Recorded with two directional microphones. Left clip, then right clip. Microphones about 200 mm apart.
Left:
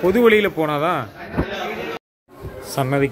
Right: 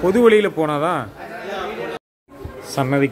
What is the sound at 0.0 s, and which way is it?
A man's voice, 5° right (ahead or behind).